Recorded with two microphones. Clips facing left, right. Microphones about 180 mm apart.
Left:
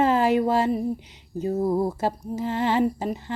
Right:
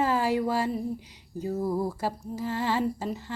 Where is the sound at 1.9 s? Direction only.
20° left (ahead or behind).